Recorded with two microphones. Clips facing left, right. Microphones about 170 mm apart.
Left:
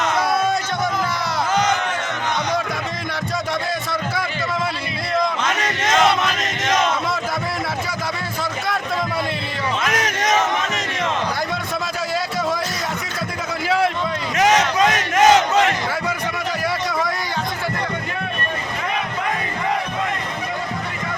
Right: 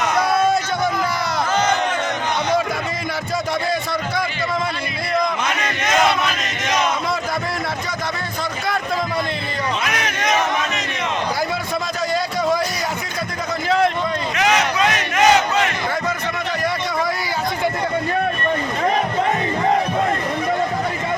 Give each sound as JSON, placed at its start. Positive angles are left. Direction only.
{"t": 1.5, "sound": "music", "side_deg": 15}
{"t": 9.8, "sound": "battle cry", "side_deg": 45}
{"t": 13.7, "sound": "a sound", "side_deg": 5}
{"t": 14.3, "sound": "battle cry", "side_deg": 45}